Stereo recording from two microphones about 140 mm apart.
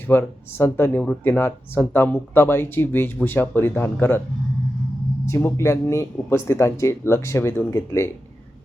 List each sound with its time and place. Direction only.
0.1 s speech: 15° left (ahead or behind)
5.2 s speech: 15° left (ahead or behind)